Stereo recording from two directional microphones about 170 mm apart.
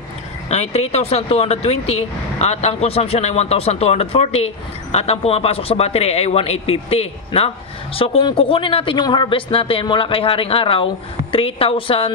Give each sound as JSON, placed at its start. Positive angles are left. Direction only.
{"t": 0.5, "sound": "a man's voice", "side_deg": 40}